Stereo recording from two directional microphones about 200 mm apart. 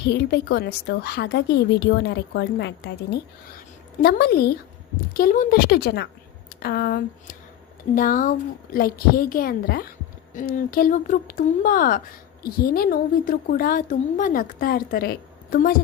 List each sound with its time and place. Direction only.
0.0 s a woman's voice: 55° left (ahead or behind)